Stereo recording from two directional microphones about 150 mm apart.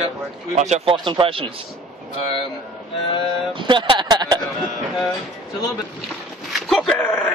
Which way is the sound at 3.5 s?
30° right (ahead or behind).